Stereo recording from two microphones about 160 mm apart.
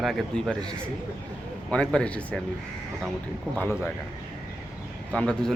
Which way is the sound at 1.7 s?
5° left (ahead or behind).